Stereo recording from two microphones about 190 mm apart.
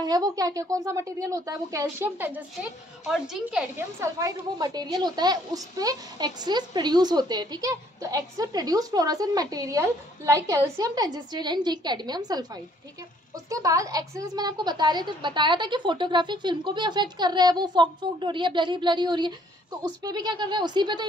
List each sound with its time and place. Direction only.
0.0 s a woman's voice: 20° right (ahead or behind); by 3.8 s 5° right (ahead or behind)
4.0 s speech: 20° right (ahead or behind)
13.5 s speech: 15° right (ahead or behind)